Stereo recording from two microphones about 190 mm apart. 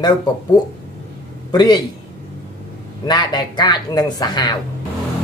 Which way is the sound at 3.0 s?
25° left (ahead or behind).